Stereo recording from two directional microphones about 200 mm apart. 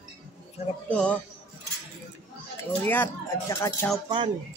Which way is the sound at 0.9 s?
5° left (ahead or behind).